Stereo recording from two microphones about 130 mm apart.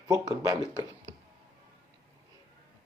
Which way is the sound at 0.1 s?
25° right (ahead or behind).